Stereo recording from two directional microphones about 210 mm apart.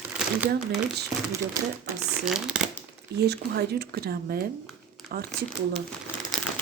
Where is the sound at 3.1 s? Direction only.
50° right (ahead or behind).